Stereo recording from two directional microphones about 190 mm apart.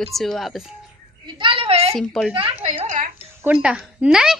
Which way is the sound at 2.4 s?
30° right (ahead or behind).